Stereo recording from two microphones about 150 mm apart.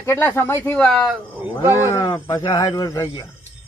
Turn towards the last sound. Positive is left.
turn(degrees=20)  # may be behind; listen again after turning